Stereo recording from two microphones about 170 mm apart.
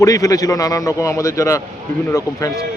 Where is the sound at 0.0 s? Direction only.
20° left (ahead or behind).